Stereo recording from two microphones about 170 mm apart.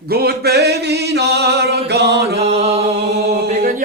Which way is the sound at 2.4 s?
35° right (ahead or behind).